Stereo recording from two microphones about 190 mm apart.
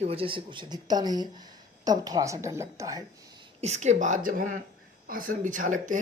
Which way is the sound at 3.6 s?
35° right (ahead or behind).